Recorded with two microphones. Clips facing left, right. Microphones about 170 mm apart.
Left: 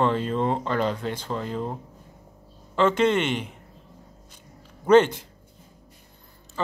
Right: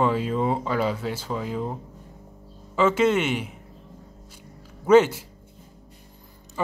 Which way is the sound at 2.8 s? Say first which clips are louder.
Even; 5° right (ahead or behind).